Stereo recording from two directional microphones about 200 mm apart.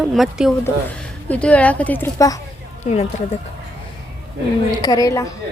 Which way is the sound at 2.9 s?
30° left (ahead or behind).